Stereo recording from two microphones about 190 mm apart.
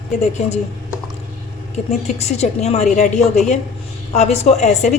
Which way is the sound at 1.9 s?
35° left (ahead or behind).